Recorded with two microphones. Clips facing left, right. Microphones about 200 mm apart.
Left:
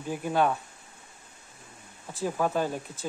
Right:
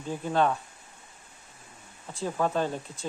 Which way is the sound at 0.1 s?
10° left (ahead or behind).